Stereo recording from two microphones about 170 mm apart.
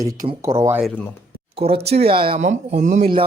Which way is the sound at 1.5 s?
30° right (ahead or behind).